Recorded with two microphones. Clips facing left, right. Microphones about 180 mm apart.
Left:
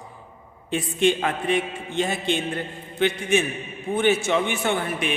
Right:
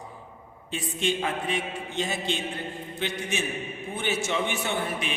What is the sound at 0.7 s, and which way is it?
A man's voice, 60° left (ahead or behind).